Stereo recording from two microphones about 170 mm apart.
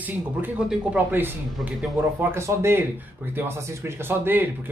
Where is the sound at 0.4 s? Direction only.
10° right (ahead or behind).